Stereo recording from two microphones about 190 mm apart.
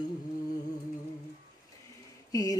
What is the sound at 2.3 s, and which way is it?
Speech, 20° left (ahead or behind).